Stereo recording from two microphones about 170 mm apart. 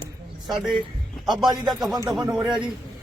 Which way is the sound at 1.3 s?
25° right (ahead or behind).